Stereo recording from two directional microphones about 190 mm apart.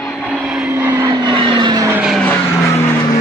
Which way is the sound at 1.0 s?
25° right (ahead or behind).